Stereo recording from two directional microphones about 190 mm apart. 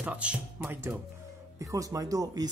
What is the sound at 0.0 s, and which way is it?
Speech, 5° right (ahead or behind).